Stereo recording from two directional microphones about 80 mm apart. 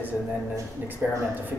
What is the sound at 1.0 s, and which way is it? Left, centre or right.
Speech, right.